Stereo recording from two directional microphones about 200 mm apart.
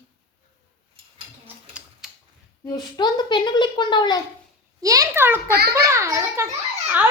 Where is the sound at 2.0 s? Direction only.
5° right (ahead or behind).